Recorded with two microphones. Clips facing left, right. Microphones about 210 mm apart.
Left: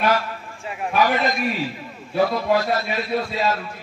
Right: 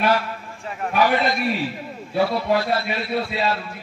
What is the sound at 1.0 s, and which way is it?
Speech, 45° left (ahead or behind).